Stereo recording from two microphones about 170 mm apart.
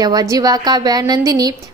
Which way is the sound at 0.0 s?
20° right (ahead or behind).